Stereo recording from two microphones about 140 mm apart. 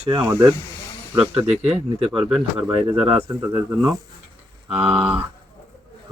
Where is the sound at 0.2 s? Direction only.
20° right (ahead or behind).